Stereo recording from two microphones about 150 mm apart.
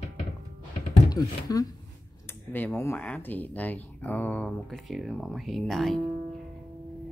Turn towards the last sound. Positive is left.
turn(degrees=0)  # may be behind; listen again after turning